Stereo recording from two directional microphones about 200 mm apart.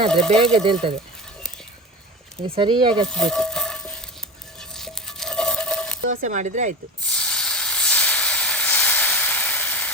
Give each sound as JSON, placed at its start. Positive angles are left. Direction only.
{"t": 0.1, "sound": "speech", "side_deg": 5}
{"t": 0.5, "sound": "speech", "side_deg": -25}
{"t": 2.6, "sound": "speech", "side_deg": -25}
{"t": 3.1, "sound": "a sound", "side_deg": 5}
{"t": 6.1, "sound": "speech", "side_deg": -40}
{"t": 7.0, "sound": "hiss", "side_deg": 5}